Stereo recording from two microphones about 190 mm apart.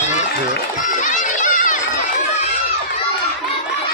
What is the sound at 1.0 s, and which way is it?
Run, 40° left (ahead or behind).